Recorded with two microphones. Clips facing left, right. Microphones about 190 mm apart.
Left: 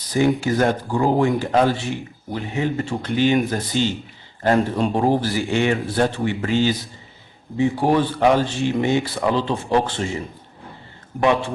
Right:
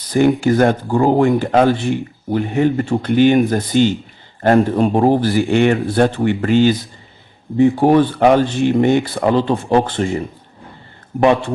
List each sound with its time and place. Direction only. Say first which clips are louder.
0.1 s speech: right 5 dB; 60° right (ahead or behind)